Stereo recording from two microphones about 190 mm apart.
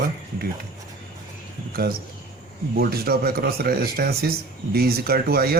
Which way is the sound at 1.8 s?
50° right (ahead or behind).